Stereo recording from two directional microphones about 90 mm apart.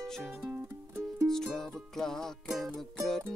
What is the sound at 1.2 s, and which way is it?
Music, 5° left (ahead or behind).